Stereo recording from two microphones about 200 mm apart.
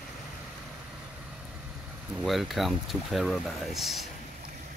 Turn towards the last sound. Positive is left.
turn(degrees=0)  # may be behind; listen again after turning